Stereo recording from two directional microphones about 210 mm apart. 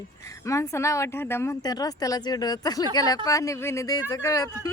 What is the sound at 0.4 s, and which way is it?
Speech, 15° left (ahead or behind).